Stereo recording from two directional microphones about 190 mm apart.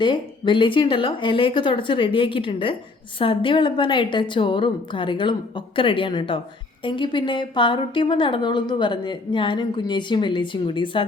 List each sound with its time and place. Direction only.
0.0 s a woman's voice: 25° left (ahead or behind)